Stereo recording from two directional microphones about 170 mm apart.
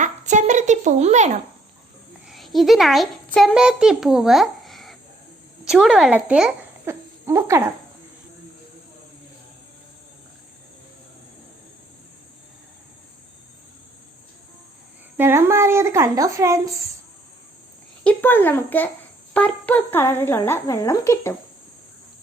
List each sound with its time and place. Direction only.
0.0 s a sound: 45° right (ahead or behind)
2.2 s a child's voice: centre (ahead or behind)
15.2 s a woman's voice: 15° right (ahead or behind)
18.0 s speech: 10° left (ahead or behind)